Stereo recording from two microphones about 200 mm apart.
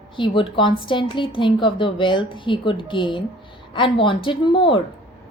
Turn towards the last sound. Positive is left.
turn(degrees=25)  # may be behind; listen again after turning